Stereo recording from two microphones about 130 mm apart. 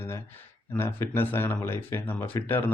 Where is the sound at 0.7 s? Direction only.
20° left (ahead or behind).